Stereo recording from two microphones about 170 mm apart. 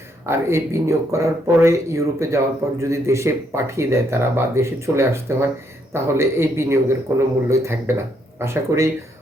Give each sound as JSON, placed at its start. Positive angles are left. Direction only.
{"t": 0.3, "sound": "speech", "side_deg": -15}